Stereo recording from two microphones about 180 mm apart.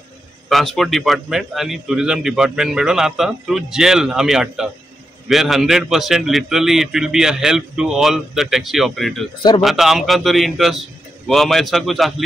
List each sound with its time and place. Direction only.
0.5 s a man's voice: centre (ahead or behind)